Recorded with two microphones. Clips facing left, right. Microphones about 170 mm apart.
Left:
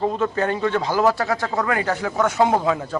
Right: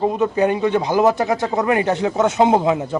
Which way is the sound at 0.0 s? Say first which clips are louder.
Right 4 dB; 15° right (ahead or behind).